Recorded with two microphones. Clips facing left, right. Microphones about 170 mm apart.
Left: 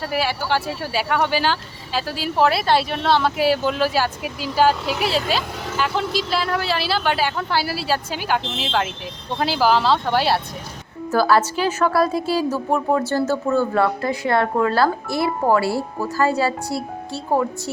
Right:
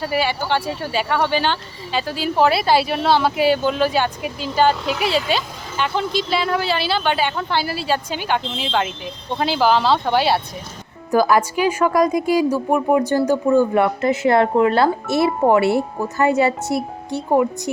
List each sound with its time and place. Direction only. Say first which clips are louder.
0.0 s speech: right 2 dB; centre (ahead or behind)
9.4 s speech: right 1 dB; centre (ahead or behind)
11.1 s a woman's voice: right 1 dB; 15° right (ahead or behind)